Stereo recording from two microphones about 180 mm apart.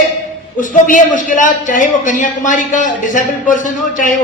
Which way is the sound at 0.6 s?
45° left (ahead or behind).